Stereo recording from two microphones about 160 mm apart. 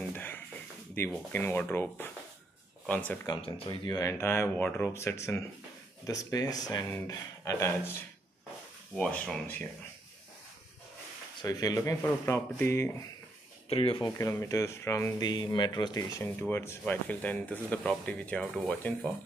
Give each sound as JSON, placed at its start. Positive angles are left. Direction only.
{"t": 0.1, "sound": "a sound", "side_deg": 10}
{"t": 1.0, "sound": "speech", "side_deg": 15}
{"t": 3.3, "sound": "speech", "side_deg": 30}
{"t": 11.4, "sound": "speech", "side_deg": 25}
{"t": 13.7, "sound": "speech", "side_deg": 35}
{"t": 14.1, "sound": "speech", "side_deg": 20}